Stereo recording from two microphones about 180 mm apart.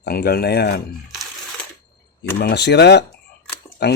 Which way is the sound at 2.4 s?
65° left (ahead or behind).